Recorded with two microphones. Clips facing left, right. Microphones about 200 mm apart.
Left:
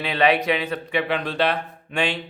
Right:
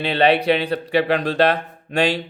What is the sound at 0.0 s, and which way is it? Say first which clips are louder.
Speech: right 3 dB; 30° right (ahead or behind).